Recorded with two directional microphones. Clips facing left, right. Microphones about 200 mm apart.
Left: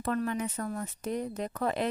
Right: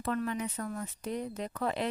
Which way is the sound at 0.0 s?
45° left (ahead or behind).